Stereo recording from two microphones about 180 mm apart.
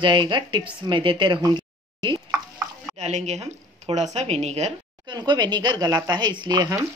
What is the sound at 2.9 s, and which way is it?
A woman's voice, 40° right (ahead or behind).